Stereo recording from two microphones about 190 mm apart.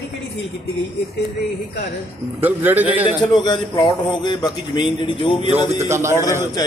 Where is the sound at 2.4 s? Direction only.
10° right (ahead or behind).